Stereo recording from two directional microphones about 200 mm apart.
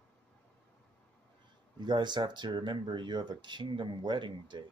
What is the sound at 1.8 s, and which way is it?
Speech, 20° right (ahead or behind).